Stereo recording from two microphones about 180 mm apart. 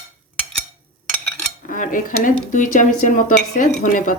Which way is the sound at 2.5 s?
45° left (ahead or behind).